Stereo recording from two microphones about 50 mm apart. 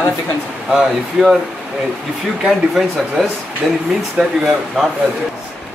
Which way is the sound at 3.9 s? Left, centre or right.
Centre.